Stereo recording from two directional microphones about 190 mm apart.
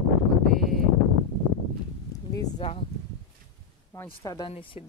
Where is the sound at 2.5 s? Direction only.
30° left (ahead or behind).